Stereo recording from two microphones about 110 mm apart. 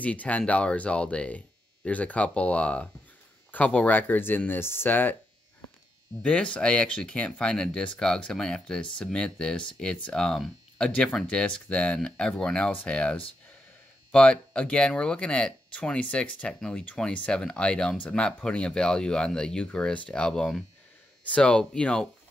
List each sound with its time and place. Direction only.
0.0 s speech: 15° left (ahead or behind)
6.2 s speech: 10° left (ahead or behind)